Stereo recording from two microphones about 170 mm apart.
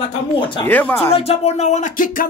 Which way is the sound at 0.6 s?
10° left (ahead or behind).